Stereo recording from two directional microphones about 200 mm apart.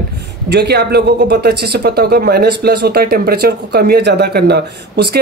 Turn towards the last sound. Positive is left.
turn(degrees=-55)  # may be behind; listen again after turning